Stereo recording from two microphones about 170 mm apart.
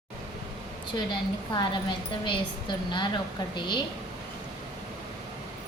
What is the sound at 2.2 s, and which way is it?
A woman's voice, 30° left (ahead or behind).